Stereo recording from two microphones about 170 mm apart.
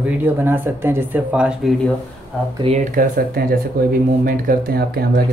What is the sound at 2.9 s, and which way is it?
Speech, 55° right (ahead or behind).